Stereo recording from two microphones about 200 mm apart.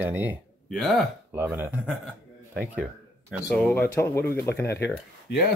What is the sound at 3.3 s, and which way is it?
Speech, centre (ahead or behind).